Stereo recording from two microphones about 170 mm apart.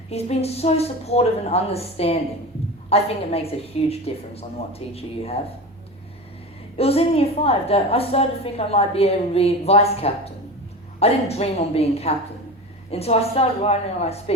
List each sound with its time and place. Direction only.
0.1 s a woman's voice: 35° left (ahead or behind)
6.7 s a woman's voice: 35° left (ahead or behind)